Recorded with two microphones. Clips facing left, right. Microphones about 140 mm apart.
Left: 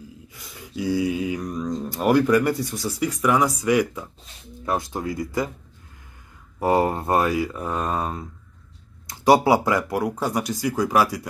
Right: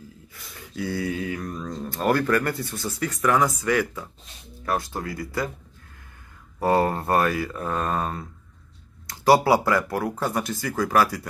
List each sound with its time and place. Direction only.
0.3 s speech: 15° left (ahead or behind)
6.6 s speech: 15° left (ahead or behind)